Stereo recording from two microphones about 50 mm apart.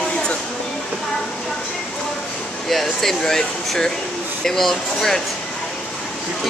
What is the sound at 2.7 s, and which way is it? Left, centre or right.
Speech, centre.